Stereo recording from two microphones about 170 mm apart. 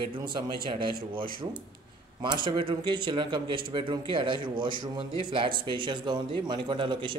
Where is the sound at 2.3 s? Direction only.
25° right (ahead or behind).